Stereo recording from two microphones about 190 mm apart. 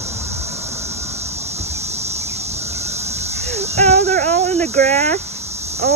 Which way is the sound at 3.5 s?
35° right (ahead or behind).